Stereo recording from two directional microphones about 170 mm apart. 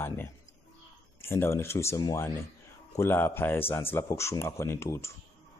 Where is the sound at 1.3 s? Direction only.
15° left (ahead or behind).